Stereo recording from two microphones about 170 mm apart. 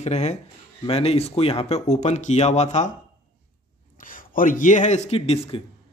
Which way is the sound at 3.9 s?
55° left (ahead or behind).